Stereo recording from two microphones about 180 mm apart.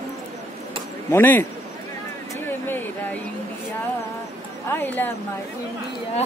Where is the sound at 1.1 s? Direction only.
10° left (ahead or behind).